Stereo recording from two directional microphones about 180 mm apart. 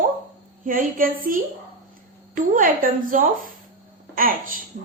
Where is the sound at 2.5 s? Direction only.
50° right (ahead or behind).